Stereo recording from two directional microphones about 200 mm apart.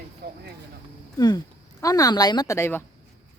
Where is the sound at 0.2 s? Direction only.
50° right (ahead or behind).